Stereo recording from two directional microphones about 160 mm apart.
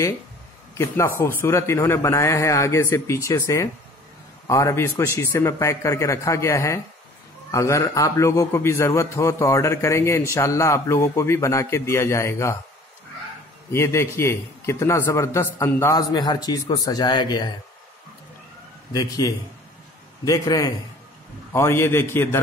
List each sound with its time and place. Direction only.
0.7 s a man's voice: 15° left (ahead or behind)
13.7 s a man's voice: 15° left (ahead or behind)
18.9 s a man's voice: 20° left (ahead or behind)